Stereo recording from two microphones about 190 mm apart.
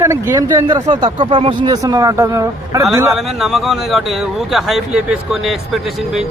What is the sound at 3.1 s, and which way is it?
Speech, centre (ahead or behind).